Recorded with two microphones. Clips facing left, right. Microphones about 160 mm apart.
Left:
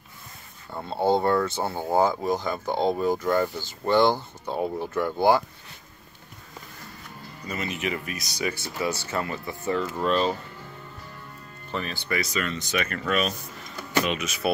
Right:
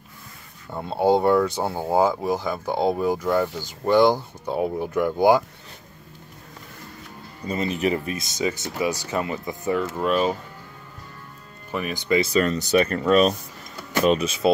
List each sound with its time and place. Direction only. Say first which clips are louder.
0.7 s speech: right 3 dB; 10° right (ahead or behind)
7.4 s speech: right 7 dB; 30° right (ahead or behind); by 10.3 s 10° right (ahead or behind)
11.7 s speech: right 7 dB; 15° right (ahead or behind)
12.3 s speech: right 9 dB; 40° right (ahead or behind)